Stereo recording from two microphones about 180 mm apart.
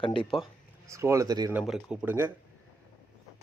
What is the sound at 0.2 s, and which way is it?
Speech, centre (ahead or behind).